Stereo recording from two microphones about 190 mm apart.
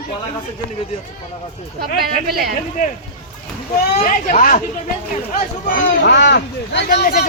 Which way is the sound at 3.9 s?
45° left (ahead or behind).